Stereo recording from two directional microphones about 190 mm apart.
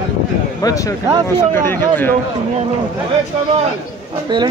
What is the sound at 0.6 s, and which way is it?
Speech, 20° left (ahead or behind).